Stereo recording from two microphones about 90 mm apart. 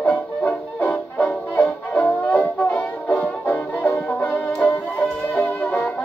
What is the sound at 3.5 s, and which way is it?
Music, 30° left (ahead or behind).